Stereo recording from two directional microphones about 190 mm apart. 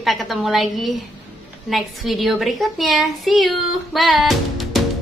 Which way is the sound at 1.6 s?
Centre (ahead or behind).